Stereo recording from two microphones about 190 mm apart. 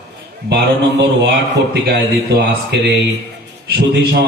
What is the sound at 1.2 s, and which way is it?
Speech, 60° right (ahead or behind).